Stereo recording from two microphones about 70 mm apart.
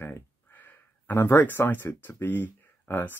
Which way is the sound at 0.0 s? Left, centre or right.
Left.